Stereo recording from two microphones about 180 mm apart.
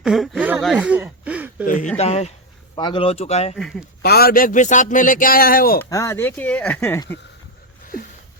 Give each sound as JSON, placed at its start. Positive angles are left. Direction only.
{"t": 0.0, "sound": "speech", "side_deg": 0}
{"t": 0.6, "sound": "a sound", "side_deg": 0}
{"t": 1.6, "sound": "speech", "side_deg": 50}
{"t": 2.0, "sound": "speech", "side_deg": 35}
{"t": 3.5, "sound": "speech", "side_deg": 0}
{"t": 4.0, "sound": "a man's voice", "side_deg": 60}
{"t": 5.8, "sound": "speech", "side_deg": 15}